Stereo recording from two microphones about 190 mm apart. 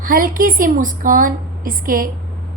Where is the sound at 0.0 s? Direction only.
45° right (ahead or behind).